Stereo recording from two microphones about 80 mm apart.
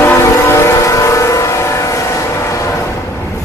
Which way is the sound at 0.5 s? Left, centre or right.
Left.